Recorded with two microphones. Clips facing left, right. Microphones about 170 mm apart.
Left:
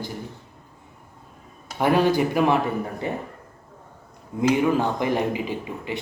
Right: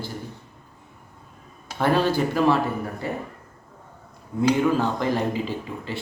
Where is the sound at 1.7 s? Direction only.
15° left (ahead or behind).